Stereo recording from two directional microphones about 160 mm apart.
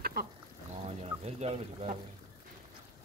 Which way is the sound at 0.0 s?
75° right (ahead or behind).